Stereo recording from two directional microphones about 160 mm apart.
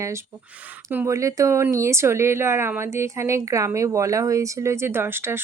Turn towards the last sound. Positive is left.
turn(degrees=-15)  # may be behind; listen again after turning